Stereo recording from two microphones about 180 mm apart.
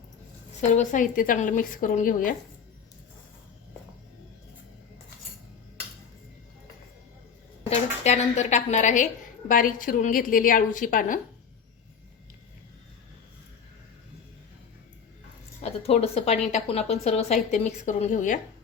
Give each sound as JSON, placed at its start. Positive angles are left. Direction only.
{"t": 0.6, "sound": "a woman's voice", "side_deg": 45}
{"t": 7.7, "sound": "a woman's voice", "side_deg": 40}
{"t": 15.6, "sound": "a woman's voice", "side_deg": 35}